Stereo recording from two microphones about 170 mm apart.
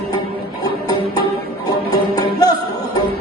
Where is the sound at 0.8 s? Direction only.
20° left (ahead or behind).